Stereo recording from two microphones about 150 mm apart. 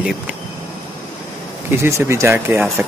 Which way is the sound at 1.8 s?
15° right (ahead or behind).